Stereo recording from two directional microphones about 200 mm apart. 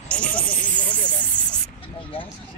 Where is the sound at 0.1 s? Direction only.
5° left (ahead or behind).